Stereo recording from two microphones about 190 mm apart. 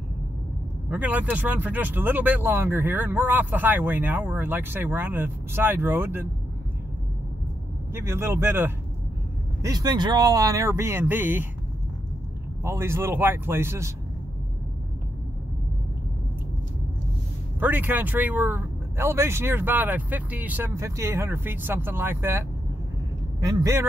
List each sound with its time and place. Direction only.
0.8 s speech: 5° right (ahead or behind)
7.9 s speech: 15° right (ahead or behind)
12.6 s speech: 15° right (ahead or behind)
17.6 s speech: 10° right (ahead or behind)
23.4 s speech: 15° right (ahead or behind)